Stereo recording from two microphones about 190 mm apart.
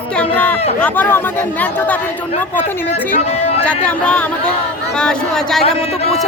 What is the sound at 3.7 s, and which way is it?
Speech, 5° left (ahead or behind).